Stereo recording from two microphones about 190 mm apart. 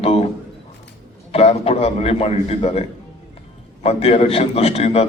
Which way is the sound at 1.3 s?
30° left (ahead or behind).